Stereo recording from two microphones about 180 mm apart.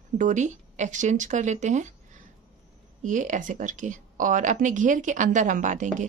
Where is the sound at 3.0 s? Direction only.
45° right (ahead or behind).